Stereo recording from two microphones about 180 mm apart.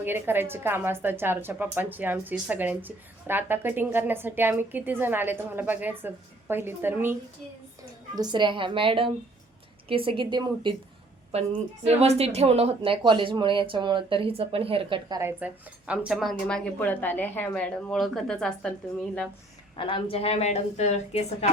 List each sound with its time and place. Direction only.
0.0 s a woman's voice: 10° right (ahead or behind)
8.1 s speech: 25° right (ahead or behind)
15.2 s a woman's voice: 10° right (ahead or behind)
16.3 s a woman's voice: 5° left (ahead or behind)
19.7 s a woman's voice: 30° left (ahead or behind)